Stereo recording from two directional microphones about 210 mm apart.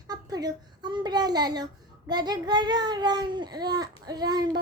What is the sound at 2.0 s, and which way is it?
A child's voice, 20° right (ahead or behind).